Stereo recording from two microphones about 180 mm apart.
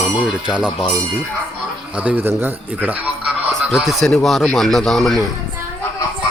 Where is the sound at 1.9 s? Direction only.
5° right (ahead or behind).